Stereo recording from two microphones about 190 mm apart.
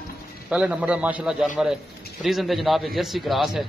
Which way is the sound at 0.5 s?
5° right (ahead or behind).